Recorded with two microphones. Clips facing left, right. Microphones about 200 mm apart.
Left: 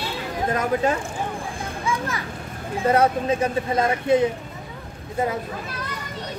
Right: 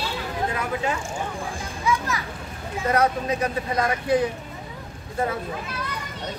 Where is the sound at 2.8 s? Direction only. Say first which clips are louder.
Left 3 dB; 30° left (ahead or behind).